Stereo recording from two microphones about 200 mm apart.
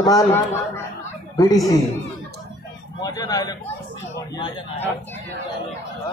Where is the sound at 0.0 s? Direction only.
20° left (ahead or behind).